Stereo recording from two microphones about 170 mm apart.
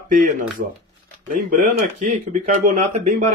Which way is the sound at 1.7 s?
45° right (ahead or behind).